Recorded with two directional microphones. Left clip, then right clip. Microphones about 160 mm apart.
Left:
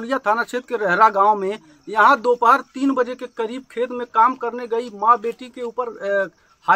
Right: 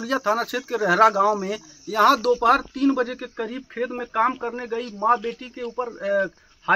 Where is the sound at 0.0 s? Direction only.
20° left (ahead or behind).